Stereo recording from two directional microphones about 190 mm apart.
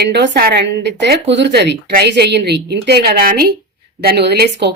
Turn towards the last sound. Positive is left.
turn(degrees=-65)  # may be behind; listen again after turning